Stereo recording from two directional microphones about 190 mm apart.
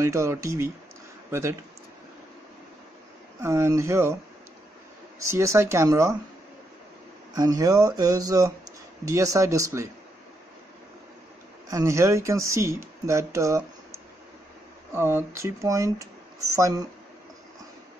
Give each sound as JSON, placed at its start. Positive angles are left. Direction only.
{"t": 0.0, "sound": "speech", "side_deg": -15}
{"t": 3.3, "sound": "speech", "side_deg": -15}
{"t": 5.3, "sound": "speech", "side_deg": -15}
{"t": 7.3, "sound": "speech", "side_deg": -20}
{"t": 11.7, "sound": "speech", "side_deg": -15}
{"t": 14.9, "sound": "speech", "side_deg": -10}